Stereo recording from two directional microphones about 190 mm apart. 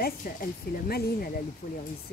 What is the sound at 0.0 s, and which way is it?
Speech, 50° left (ahead or behind).